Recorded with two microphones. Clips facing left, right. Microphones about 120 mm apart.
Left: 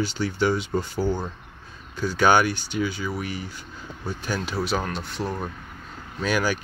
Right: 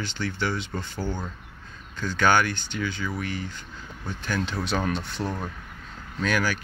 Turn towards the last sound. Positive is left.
turn(degrees=15)  # may be behind; listen again after turning